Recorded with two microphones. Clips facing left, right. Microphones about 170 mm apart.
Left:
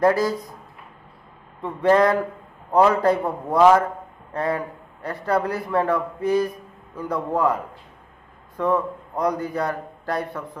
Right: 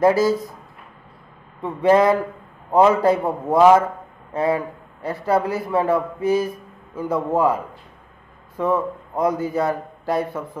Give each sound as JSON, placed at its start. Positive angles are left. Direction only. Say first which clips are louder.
{"t": 0.0, "sound": "a man's voice", "louder": "right 3 dB", "side_deg": -5}
{"t": 1.6, "sound": "a man's voice", "louder": "right 2 dB", "side_deg": -5}
{"t": 3.3, "sound": "a man's voice", "louder": "right 3 dB", "side_deg": -20}
{"t": 4.3, "sound": "a man's voice", "louder": "right 4 dB", "side_deg": -5}